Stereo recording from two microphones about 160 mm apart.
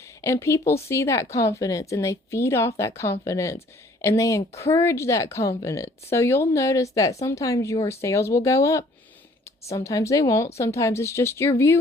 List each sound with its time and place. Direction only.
0.2 s speech: 20° left (ahead or behind)